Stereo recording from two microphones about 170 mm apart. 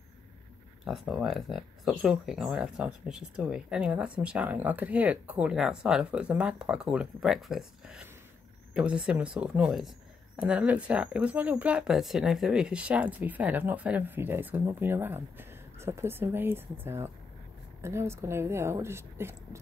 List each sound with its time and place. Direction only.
0.8 s speech: centre (ahead or behind)